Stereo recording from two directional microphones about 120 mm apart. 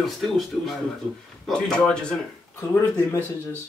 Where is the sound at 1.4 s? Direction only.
5° left (ahead or behind).